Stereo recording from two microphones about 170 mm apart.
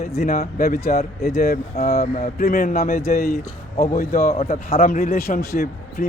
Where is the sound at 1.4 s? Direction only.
65° left (ahead or behind).